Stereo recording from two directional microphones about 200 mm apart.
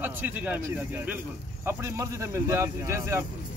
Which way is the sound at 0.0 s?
10° right (ahead or behind).